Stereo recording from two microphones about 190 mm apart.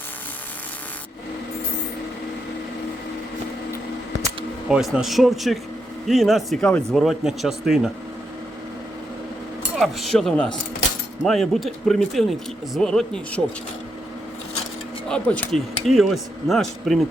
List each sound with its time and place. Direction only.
4.7 s speech: centre (ahead or behind)
9.7 s speech: centre (ahead or behind)
15.1 s speech: 5° left (ahead or behind)